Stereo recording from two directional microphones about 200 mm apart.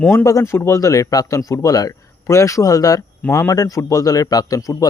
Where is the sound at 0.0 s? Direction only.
10° left (ahead or behind).